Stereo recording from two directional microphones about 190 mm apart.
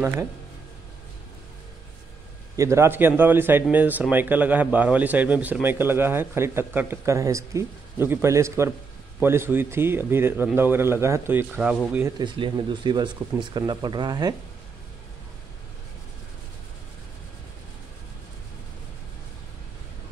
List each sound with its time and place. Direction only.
2.5 s a man's voice: 15° right (ahead or behind)
12.2 s speech: 25° right (ahead or behind)